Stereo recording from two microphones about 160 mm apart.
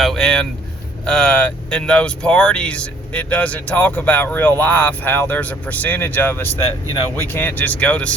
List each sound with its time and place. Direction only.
0.0 s speech: centre (ahead or behind)